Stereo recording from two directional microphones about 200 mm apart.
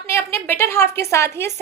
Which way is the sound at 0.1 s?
10° left (ahead or behind).